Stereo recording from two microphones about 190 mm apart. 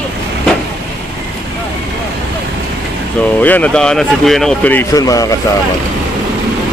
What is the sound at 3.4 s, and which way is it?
A man's voice, 10° left (ahead or behind).